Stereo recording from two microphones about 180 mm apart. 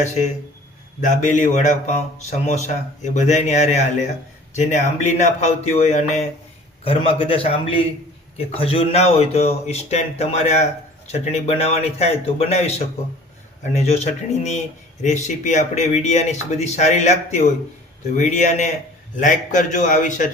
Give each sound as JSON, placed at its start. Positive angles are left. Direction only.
{"t": 0.0, "sound": "a man's voice", "side_deg": 40}
{"t": 13.7, "sound": "a man's voice", "side_deg": 35}